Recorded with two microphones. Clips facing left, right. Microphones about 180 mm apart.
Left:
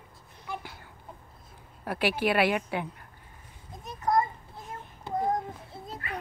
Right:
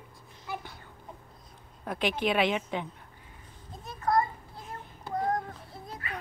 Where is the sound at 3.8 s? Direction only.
20° left (ahead or behind).